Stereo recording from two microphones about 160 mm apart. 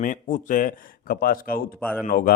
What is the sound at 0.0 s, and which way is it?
A man's voice, 55° left (ahead or behind).